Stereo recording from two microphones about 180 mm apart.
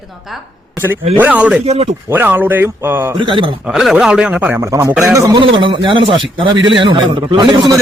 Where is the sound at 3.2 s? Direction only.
25° right (ahead or behind).